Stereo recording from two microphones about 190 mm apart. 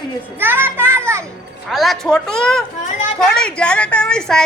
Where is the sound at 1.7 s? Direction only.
Centre (ahead or behind).